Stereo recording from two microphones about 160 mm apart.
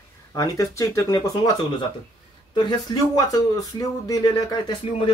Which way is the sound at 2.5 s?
25° left (ahead or behind).